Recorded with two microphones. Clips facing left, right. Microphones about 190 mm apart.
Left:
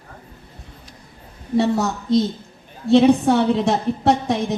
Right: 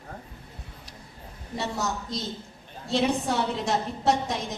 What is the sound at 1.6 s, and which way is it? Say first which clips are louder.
A woman's voice: left 11 dB; 60° left (ahead or behind).